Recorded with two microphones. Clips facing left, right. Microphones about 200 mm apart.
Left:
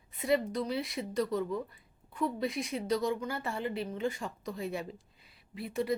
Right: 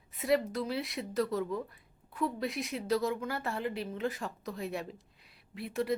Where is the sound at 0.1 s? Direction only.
Centre (ahead or behind).